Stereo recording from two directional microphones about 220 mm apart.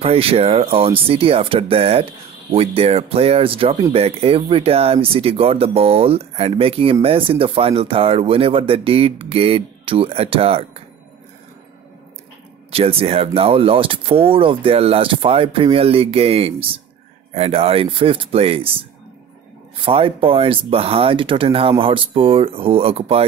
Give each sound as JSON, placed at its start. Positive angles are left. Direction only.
{"t": 0.0, "sound": "speech", "side_deg": -25}
{"t": 12.7, "sound": "speech", "side_deg": -25}